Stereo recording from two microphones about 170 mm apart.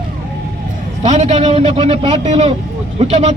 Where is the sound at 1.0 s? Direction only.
45° right (ahead or behind).